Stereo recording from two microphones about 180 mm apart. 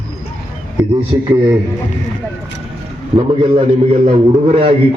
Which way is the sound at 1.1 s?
25° right (ahead or behind).